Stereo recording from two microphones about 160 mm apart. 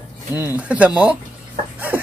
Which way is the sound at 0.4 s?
10° right (ahead or behind).